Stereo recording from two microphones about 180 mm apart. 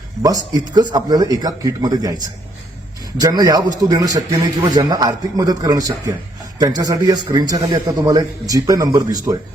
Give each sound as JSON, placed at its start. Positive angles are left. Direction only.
{"t": 0.2, "sound": "a man's voice", "side_deg": -20}